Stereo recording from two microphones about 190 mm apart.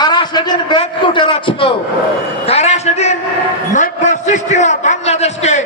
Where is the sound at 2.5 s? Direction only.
35° left (ahead or behind).